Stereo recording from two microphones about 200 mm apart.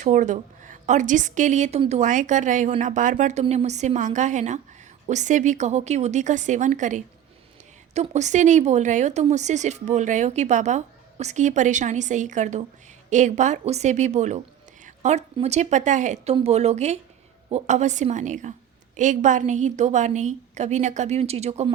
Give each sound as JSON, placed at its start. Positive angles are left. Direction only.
{"t": 0.0, "sound": "a woman's voice", "side_deg": -40}